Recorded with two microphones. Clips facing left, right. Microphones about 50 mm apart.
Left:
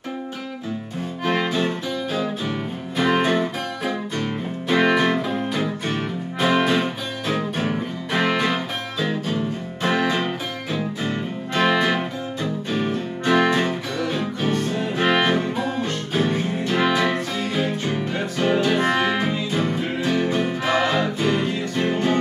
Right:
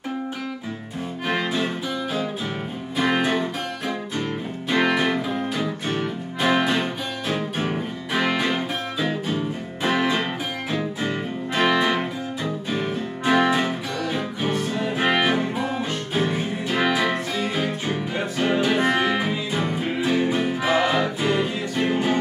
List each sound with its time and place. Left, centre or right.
3.0 s music: centre
8.5 s music: centre
11.8 s music: centre
13.2 s music: centre